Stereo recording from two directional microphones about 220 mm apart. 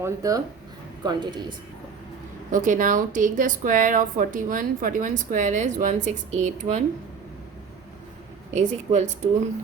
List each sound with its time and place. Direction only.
0.0 s speech: 15° right (ahead or behind)
2.5 s speech: 35° right (ahead or behind)
8.5 s speech: 30° right (ahead or behind)